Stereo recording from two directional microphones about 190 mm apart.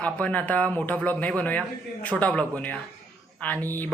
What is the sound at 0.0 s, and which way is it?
Speech, 5° left (ahead or behind).